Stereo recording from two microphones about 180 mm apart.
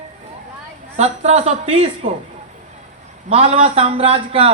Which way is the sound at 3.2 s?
35° right (ahead or behind).